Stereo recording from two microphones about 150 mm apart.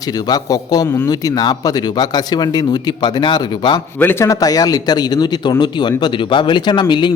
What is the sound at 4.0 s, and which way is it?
Speech, 15° left (ahead or behind).